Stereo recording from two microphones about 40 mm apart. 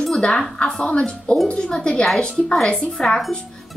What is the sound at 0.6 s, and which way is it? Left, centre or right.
A woman's voice, centre.